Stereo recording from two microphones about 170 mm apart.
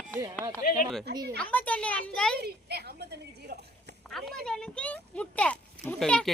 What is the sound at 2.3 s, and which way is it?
A woman's voice, 70° right (ahead or behind).